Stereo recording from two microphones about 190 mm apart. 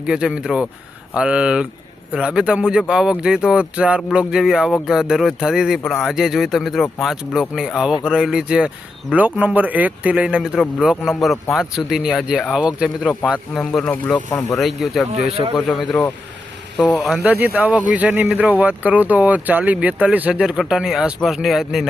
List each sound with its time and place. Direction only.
0.0 s speech: 5° right (ahead or behind)
15.3 s speech: 30° right (ahead or behind)
15.5 s speech: centre (ahead or behind)
17.2 s speech: 10° right (ahead or behind)